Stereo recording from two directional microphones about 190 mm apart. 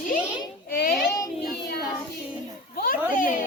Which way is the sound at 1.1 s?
15° left (ahead or behind).